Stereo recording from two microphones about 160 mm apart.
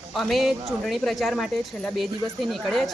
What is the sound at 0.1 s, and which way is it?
A woman's voice, centre (ahead or behind).